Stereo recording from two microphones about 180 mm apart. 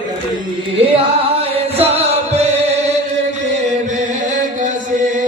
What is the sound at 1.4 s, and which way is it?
Music, 35° right (ahead or behind).